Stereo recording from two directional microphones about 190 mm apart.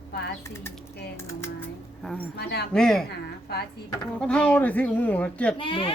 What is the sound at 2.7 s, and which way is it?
Speech, 5° left (ahead or behind).